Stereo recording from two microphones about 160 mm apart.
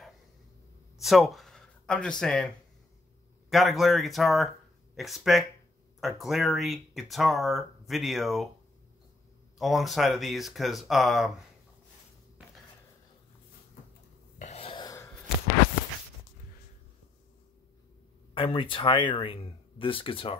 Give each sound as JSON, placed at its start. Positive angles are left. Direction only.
{"t": 0.9, "sound": "speech", "side_deg": 0}
{"t": 9.6, "sound": "speech", "side_deg": 0}
{"t": 14.4, "sound": "a sound", "side_deg": 40}
{"t": 18.3, "sound": "speech", "side_deg": 35}